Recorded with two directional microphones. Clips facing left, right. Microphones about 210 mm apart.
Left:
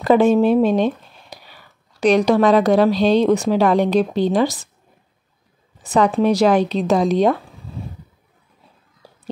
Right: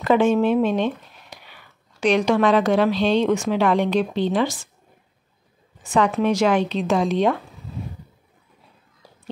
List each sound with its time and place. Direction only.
0.0 s speech: 35° left (ahead or behind)
5.8 s speech: 35° left (ahead or behind)